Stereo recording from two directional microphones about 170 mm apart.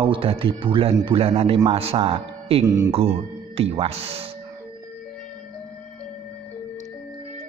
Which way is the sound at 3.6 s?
35° right (ahead or behind).